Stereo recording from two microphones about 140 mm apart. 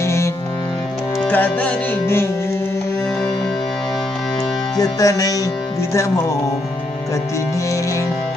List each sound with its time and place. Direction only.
0.0 s music: 20° left (ahead or behind)
1.3 s music: 10° left (ahead or behind)
4.7 s music: 25° left (ahead or behind)